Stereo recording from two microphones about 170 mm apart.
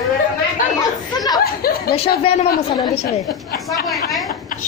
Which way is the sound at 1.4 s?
65° left (ahead or behind).